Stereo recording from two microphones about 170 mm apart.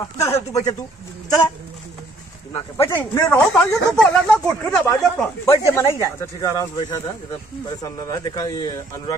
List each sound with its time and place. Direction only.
0.2 s speech: 20° left (ahead or behind)
2.5 s speech: 15° left (ahead or behind)